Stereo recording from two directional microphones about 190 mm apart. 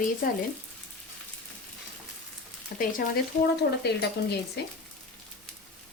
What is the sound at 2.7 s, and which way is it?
Speech, 50° left (ahead or behind).